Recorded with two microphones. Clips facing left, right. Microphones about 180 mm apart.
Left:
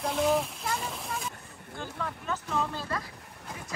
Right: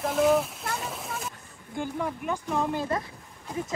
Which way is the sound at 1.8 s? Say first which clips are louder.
Right 7 dB; 15° right (ahead or behind).